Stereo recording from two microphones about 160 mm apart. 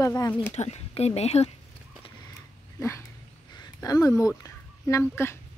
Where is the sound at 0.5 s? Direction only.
45° left (ahead or behind).